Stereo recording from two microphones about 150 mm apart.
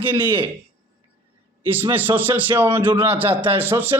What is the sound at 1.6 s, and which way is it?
A man's voice, 15° right (ahead or behind).